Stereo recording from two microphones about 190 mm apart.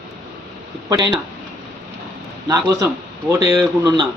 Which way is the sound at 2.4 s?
15° right (ahead or behind).